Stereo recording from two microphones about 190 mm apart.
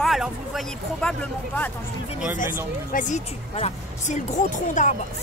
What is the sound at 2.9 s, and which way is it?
A woman's voice, 40° left (ahead or behind).